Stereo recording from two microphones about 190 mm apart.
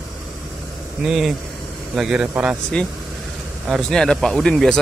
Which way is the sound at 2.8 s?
5° left (ahead or behind).